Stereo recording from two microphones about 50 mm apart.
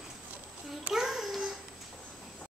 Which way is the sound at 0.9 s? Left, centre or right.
Centre.